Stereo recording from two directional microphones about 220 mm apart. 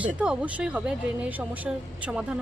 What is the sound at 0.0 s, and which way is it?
Speech, 5° right (ahead or behind).